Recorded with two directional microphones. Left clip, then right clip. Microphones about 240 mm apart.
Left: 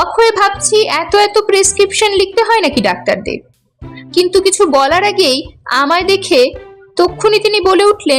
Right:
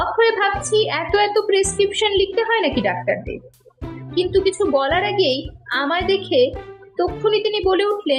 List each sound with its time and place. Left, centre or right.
0.2 s a woman's voice: left